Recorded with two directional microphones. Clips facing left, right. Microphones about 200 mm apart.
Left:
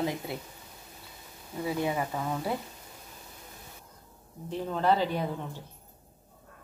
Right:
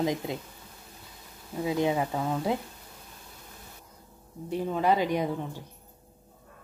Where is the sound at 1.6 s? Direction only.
20° right (ahead or behind).